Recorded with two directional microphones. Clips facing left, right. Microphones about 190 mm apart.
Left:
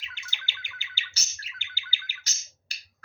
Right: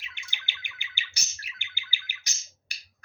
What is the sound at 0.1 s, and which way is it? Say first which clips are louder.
Bird: left 3 dB; 15° right (ahead or behind).